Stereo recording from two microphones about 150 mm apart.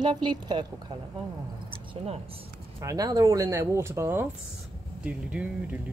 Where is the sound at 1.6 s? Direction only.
45° right (ahead or behind).